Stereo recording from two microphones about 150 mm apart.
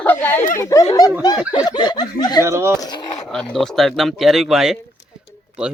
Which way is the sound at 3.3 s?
Centre (ahead or behind).